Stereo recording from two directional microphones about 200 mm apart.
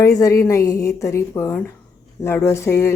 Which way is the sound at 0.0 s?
15° left (ahead or behind).